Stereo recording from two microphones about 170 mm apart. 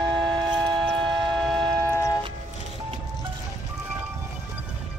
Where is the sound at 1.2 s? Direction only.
Centre (ahead or behind).